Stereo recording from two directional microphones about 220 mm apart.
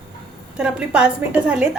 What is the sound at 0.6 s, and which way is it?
A woman's voice, 5° right (ahead or behind).